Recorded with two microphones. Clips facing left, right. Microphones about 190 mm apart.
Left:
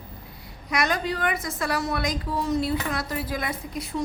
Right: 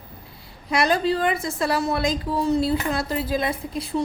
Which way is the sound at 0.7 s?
30° right (ahead or behind).